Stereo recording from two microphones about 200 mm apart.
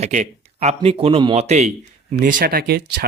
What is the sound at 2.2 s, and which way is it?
Speech, 45° right (ahead or behind).